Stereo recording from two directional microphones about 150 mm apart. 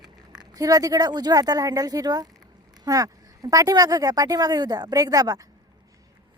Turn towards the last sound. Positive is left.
turn(degrees=-25)  # may be behind; listen again after turning